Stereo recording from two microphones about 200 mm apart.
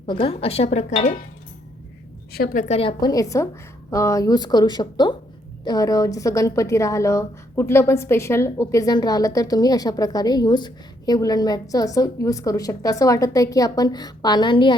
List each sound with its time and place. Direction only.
0.0 s speech: 25° left (ahead or behind)
2.3 s a woman's voice: 45° left (ahead or behind); by 14.8 s 25° left (ahead or behind)